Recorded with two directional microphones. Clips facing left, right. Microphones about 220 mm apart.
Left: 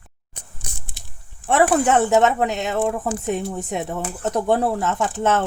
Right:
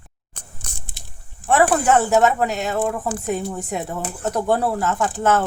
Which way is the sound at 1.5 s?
20° left (ahead or behind).